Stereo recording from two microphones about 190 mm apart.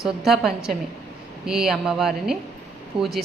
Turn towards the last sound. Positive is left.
turn(degrees=-25)  # may be behind; listen again after turning